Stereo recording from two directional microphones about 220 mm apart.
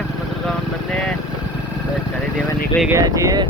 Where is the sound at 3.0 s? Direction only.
15° right (ahead or behind).